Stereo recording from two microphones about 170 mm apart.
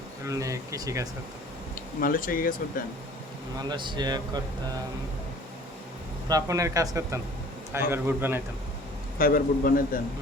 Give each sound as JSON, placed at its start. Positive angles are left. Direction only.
{"t": 0.3, "sound": "speech", "side_deg": -20}
{"t": 2.0, "sound": "a man's voice", "side_deg": 55}
{"t": 3.6, "sound": "speech", "side_deg": -25}
{"t": 6.2, "sound": "a man's voice", "side_deg": -20}
{"t": 9.1, "sound": "a man's voice", "side_deg": 60}